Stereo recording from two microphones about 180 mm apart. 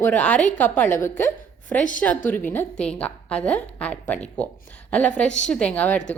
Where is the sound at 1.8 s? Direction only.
45° left (ahead or behind).